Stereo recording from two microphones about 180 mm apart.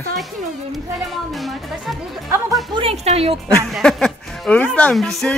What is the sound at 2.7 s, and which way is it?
Speech, 30° right (ahead or behind).